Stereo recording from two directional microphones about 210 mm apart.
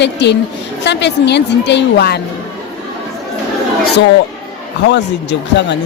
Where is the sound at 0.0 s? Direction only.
55° left (ahead or behind).